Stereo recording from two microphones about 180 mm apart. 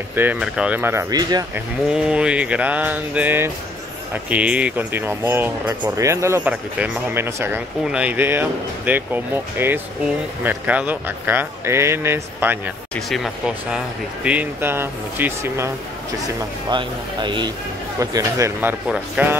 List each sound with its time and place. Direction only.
0.1 s speech: 10° right (ahead or behind)
1.5 s speech: 5° right (ahead or behind)
12.9 s speech: centre (ahead or behind)
16.7 s speech: 25° right (ahead or behind); by 19.3 s 10° right (ahead or behind)